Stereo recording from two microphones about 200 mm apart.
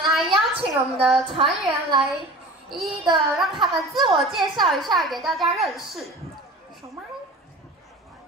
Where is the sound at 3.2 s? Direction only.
Centre (ahead or behind).